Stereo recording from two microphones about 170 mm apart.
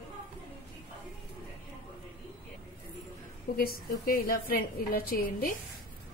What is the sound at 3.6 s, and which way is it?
A woman's voice, 60° left (ahead or behind).